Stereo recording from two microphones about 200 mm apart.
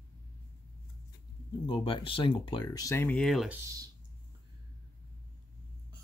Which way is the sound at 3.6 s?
15° right (ahead or behind).